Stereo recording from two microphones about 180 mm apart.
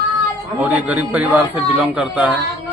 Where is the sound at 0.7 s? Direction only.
10° right (ahead or behind).